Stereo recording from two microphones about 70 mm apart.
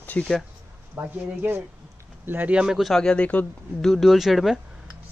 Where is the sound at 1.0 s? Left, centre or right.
Right.